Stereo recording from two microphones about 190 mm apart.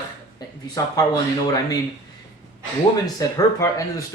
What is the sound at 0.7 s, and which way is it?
Speech, 20° left (ahead or behind).